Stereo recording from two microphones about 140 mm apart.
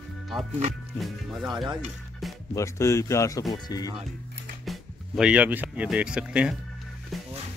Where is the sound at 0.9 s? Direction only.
Centre (ahead or behind).